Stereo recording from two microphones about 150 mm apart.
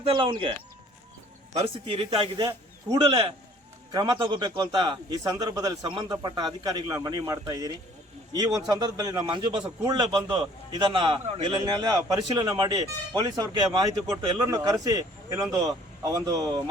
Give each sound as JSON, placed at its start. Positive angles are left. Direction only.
{"t": 0.0, "sound": "speech", "side_deg": -35}
{"t": 1.5, "sound": "a man's voice", "side_deg": -40}